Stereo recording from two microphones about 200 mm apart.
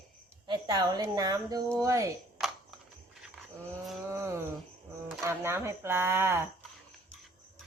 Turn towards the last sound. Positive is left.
turn(degrees=-10)  # may be behind; listen again after turning